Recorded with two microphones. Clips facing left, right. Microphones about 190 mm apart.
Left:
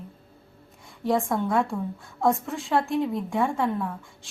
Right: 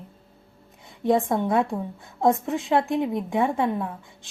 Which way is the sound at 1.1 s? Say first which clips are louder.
Right 3 dB; 20° right (ahead or behind).